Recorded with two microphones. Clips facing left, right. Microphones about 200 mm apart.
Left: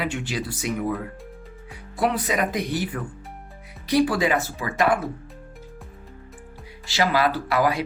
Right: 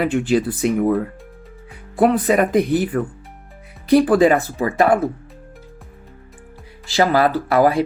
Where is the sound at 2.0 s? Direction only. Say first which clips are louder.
Right 8 dB; 50° right (ahead or behind).